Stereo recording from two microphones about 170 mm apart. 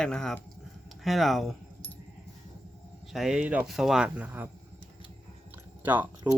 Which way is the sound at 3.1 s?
5° right (ahead or behind).